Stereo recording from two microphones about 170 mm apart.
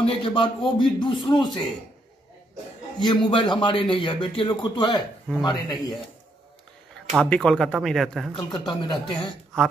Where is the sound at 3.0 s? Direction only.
30° left (ahead or behind).